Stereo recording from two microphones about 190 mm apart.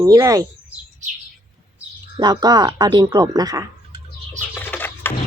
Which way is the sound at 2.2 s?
20° right (ahead or behind).